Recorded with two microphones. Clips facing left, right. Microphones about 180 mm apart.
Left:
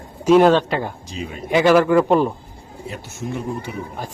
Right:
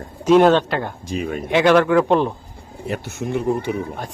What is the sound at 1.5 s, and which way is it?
Speech, centre (ahead or behind).